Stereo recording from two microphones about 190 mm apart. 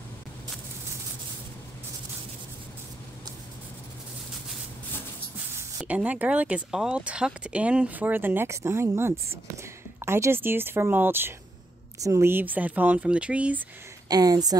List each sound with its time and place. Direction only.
5.8 s speech: 5° right (ahead or behind)
14.0 s a woman's voice: 20° right (ahead or behind)